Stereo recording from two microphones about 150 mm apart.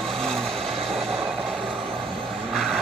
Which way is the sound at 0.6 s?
40° right (ahead or behind).